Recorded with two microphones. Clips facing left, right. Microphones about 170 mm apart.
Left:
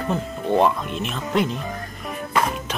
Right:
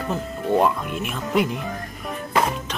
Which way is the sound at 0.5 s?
10° right (ahead or behind).